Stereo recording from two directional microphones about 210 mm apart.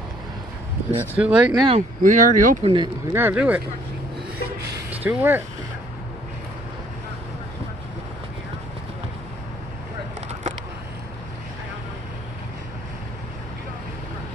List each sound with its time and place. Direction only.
0.9 s speech: 5° right (ahead or behind)
1.5 s speech: 20° right (ahead or behind)
2.0 s speech: 40° right (ahead or behind)
2.6 s speech: 20° right (ahead or behind)
3.2 s speech: 10° right (ahead or behind)
4.9 s speech: 10° right (ahead or behind)